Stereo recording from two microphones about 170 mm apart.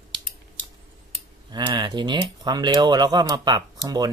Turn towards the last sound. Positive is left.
turn(degrees=-25)  # may be behind; listen again after turning